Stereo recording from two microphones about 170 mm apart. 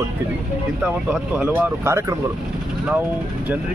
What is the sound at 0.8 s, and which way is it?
Speech, 5° right (ahead or behind).